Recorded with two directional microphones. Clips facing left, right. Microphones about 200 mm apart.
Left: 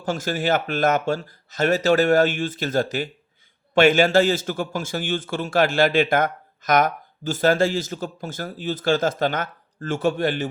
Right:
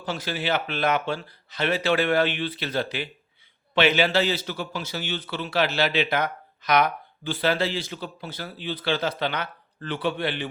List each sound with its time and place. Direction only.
0.0 s a man's voice: 45° left (ahead or behind)